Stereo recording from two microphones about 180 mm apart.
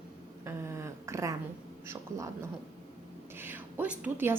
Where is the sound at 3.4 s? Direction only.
10° right (ahead or behind).